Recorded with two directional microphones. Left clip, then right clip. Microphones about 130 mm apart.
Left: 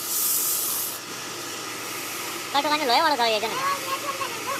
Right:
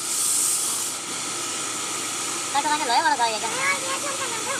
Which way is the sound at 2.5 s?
55° left (ahead or behind).